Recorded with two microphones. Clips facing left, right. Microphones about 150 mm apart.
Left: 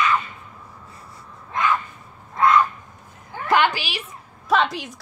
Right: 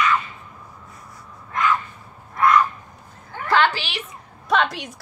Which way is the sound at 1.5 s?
25° left (ahead or behind).